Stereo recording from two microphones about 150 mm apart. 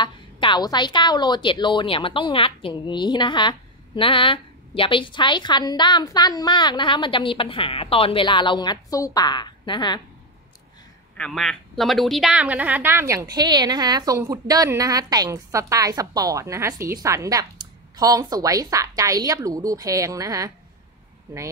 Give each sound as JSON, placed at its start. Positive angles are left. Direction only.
{"t": 0.0, "sound": "a woman's voice", "side_deg": 30}
{"t": 11.1, "sound": "a woman's voice", "side_deg": 5}